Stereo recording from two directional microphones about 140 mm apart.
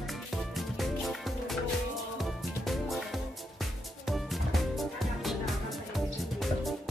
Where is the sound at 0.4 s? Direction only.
Centre (ahead or behind).